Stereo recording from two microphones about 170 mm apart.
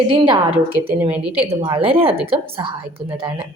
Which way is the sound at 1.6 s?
30° right (ahead or behind).